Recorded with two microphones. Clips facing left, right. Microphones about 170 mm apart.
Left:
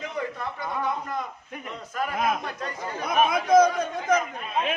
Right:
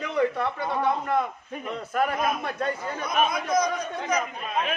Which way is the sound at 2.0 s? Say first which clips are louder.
Right 1 dB; 60° right (ahead or behind).